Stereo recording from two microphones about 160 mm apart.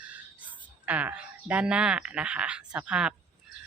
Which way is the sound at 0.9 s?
10° right (ahead or behind).